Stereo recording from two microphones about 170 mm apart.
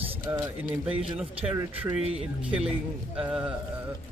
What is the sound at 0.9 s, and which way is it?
Speech, 35° right (ahead or behind).